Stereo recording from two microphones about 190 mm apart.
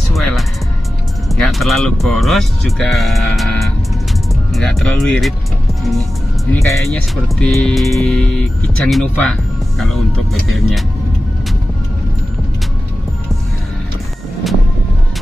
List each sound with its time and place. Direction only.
0.1 s music: centre (ahead or behind)
1.3 s speech: centre (ahead or behind)
6.5 s speech: 15° left (ahead or behind)